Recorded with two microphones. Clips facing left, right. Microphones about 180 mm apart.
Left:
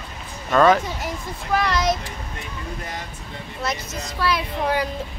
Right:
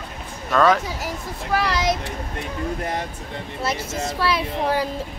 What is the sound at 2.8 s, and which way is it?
Speech, 55° right (ahead or behind).